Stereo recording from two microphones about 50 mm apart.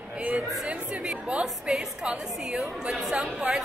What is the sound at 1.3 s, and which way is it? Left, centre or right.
A woman's voice, right.